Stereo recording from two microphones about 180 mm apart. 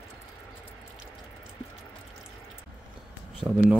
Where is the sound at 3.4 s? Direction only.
10° right (ahead or behind).